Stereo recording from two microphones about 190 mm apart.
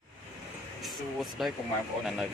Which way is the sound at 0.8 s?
Centre (ahead or behind).